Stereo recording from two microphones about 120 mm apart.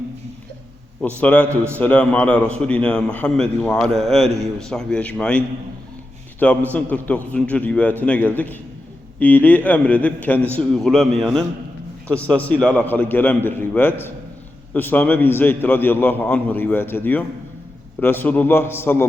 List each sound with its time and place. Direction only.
1.0 s a man's voice: 10° left (ahead or behind)
6.4 s a man's voice: 10° left (ahead or behind)